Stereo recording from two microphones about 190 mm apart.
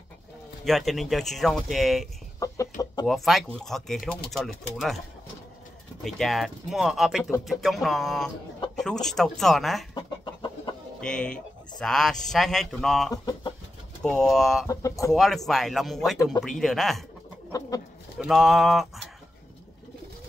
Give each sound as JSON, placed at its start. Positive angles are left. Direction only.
{"t": 0.7, "sound": "speech", "side_deg": 0}
{"t": 2.4, "sound": "chicken", "side_deg": 15}
{"t": 3.1, "sound": "speech", "side_deg": 0}
{"t": 6.0, "sound": "speech", "side_deg": 0}
{"t": 9.9, "sound": "chicken", "side_deg": 25}
{"t": 11.0, "sound": "speech", "side_deg": 5}
{"t": 13.1, "sound": "speech", "side_deg": 20}
{"t": 14.0, "sound": "speech", "side_deg": 0}
{"t": 14.7, "sound": "speech", "side_deg": 15}
{"t": 15.1, "sound": "speech", "side_deg": 0}
{"t": 17.5, "sound": "bird", "side_deg": 20}
{"t": 18.2, "sound": "speech", "side_deg": 0}